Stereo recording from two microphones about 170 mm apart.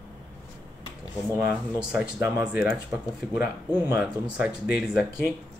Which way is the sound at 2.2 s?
20° right (ahead or behind).